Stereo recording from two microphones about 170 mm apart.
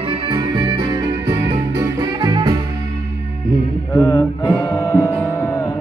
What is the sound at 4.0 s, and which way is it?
Music, 15° left (ahead or behind).